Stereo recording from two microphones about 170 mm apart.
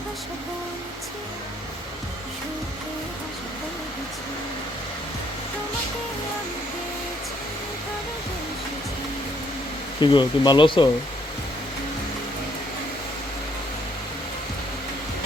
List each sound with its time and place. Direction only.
10.0 s speech: 25° left (ahead or behind)